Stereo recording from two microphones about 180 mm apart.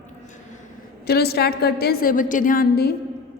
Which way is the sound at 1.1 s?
60° left (ahead or behind).